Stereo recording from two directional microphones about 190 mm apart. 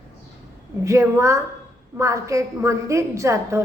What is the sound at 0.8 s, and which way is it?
A woman's voice, 15° right (ahead or behind).